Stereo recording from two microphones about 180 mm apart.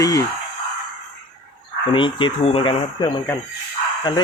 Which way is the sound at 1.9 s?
25° left (ahead or behind).